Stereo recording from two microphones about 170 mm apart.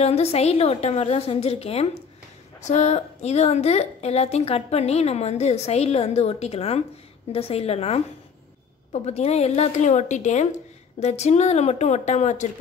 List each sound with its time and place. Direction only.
0.0 s a woman's voice: 40° left (ahead or behind)